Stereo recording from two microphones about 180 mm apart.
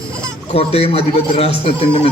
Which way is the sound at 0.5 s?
35° left (ahead or behind).